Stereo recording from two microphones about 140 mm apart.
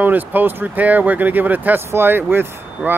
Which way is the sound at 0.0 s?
15° right (ahead or behind).